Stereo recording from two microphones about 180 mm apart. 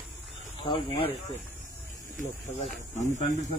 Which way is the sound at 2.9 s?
40° left (ahead or behind).